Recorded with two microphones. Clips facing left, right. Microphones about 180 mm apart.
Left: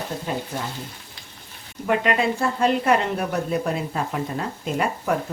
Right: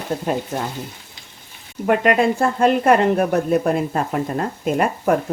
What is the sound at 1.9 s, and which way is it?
Speech, 50° right (ahead or behind).